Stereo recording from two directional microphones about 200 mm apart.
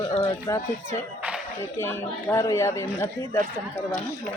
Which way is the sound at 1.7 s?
10° left (ahead or behind).